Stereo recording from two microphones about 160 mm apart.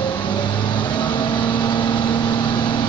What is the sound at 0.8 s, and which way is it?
Vehicle, 30° left (ahead or behind).